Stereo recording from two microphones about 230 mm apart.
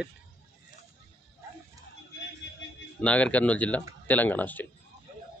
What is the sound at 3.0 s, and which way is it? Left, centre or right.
Speech, centre.